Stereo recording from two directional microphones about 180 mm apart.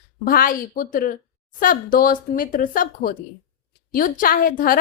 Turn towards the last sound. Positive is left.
turn(degrees=50)  # may be behind; listen again after turning